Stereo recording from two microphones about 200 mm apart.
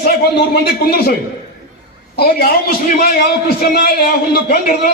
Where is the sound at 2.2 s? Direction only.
50° left (ahead or behind).